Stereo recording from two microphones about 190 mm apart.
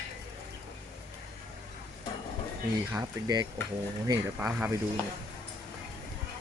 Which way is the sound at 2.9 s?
10° right (ahead or behind).